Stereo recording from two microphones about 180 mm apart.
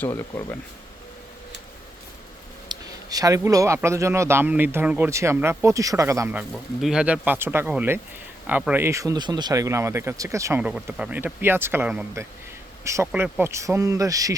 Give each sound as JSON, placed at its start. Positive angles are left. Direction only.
{"t": 0.0, "sound": "speech", "side_deg": 15}
{"t": 2.6, "sound": "speech", "side_deg": -20}
{"t": 6.5, "sound": "speech", "side_deg": 0}
{"t": 13.1, "sound": "speech", "side_deg": -5}